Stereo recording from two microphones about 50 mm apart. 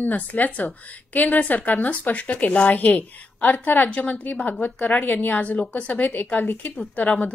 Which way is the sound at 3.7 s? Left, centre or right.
Left.